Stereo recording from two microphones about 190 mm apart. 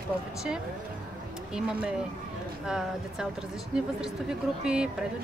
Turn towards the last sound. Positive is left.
turn(degrees=-5)  # may be behind; listen again after turning